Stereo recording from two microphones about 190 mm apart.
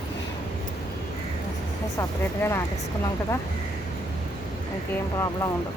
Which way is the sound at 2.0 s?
15° left (ahead or behind).